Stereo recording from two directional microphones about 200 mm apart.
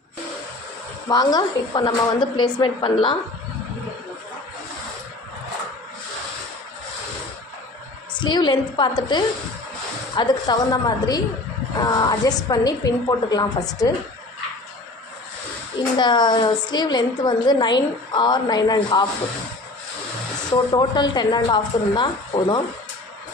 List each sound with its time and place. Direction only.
1.0 s a woman's voice: 20° left (ahead or behind)
8.2 s a woman's voice: 20° left (ahead or behind)
16.0 s a woman's voice: 20° left (ahead or behind)
20.7 s a woman's voice: 20° left (ahead or behind)